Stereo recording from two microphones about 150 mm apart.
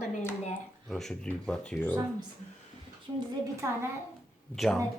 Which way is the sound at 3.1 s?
25° right (ahead or behind).